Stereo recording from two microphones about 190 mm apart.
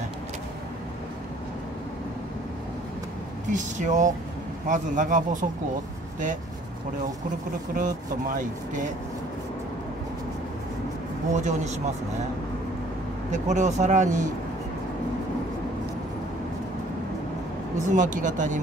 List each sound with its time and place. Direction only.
3.4 s speech: 40° right (ahead or behind)
7.7 s speech: 45° right (ahead or behind)
11.3 s speech: 40° right (ahead or behind)
13.3 s speech: 40° right (ahead or behind)
17.7 s speech: 40° right (ahead or behind)